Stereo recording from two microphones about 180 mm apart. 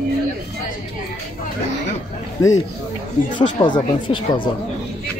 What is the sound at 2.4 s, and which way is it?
Speech, 20° left (ahead or behind).